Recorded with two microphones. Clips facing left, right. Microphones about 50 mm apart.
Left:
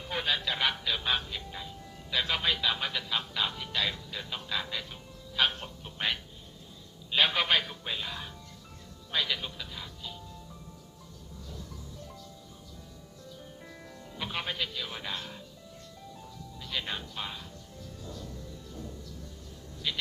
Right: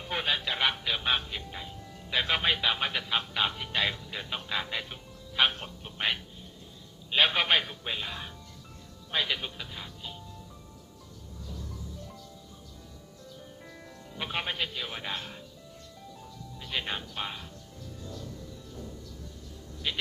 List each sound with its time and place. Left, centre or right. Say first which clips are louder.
0.1 s speech: right 1 dB; centre
13.4 s music: even; centre
14.2 s speech: right 2 dB; right
16.6 s speech: right 2 dB; right
19.9 s speech: right 1 dB; right